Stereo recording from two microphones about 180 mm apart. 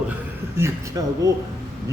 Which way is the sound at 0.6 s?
20° right (ahead or behind).